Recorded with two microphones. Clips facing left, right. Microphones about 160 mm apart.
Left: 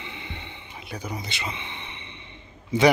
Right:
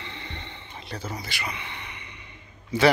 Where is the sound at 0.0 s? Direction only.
15° left (ahead or behind).